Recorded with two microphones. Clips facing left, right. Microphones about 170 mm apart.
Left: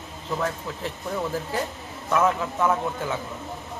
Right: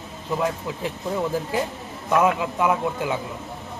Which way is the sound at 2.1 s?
15° right (ahead or behind).